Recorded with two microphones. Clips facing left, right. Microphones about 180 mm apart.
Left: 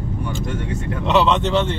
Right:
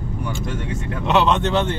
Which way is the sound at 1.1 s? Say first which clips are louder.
Left 1 dB; centre (ahead or behind).